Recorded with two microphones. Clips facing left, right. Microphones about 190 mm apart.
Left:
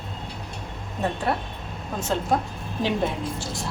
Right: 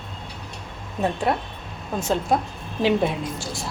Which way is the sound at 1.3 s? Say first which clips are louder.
Right 2 dB; 15° right (ahead or behind).